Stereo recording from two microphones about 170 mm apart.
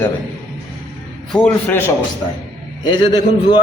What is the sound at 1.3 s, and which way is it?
Speech, 5° left (ahead or behind).